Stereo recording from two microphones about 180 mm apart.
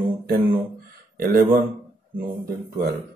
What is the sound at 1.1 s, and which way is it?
Speech, 55° right (ahead or behind).